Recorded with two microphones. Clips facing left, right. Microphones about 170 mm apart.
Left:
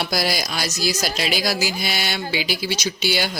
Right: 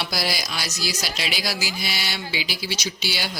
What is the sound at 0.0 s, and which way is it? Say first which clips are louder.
Speech: left 4 dB; 50° left (ahead or behind).